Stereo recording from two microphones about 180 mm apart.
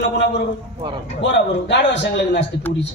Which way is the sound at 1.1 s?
75° left (ahead or behind).